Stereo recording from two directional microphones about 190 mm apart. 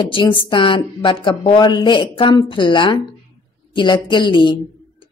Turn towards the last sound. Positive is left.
turn(degrees=25)  # may be behind; listen again after turning